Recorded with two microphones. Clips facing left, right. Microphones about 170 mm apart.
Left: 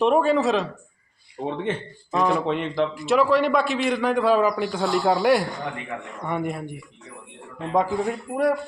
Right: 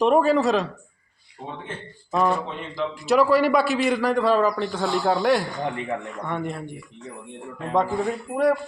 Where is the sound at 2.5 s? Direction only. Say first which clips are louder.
Left 8 dB; 70° left (ahead or behind).